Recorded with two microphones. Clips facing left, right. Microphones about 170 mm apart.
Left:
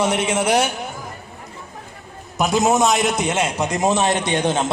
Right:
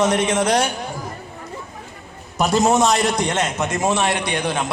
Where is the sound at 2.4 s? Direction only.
Centre (ahead or behind).